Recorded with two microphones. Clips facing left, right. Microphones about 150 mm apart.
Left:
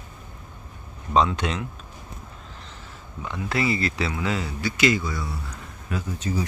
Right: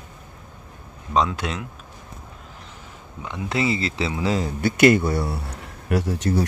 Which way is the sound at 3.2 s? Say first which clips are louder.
Right 2 dB; 20° right (ahead or behind).